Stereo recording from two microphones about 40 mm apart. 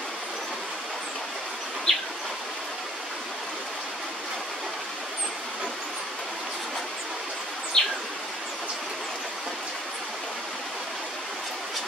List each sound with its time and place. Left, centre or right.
1.9 s bird: centre
7.7 s bird: centre